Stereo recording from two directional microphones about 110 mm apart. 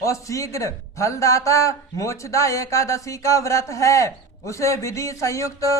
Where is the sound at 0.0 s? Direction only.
30° left (ahead or behind).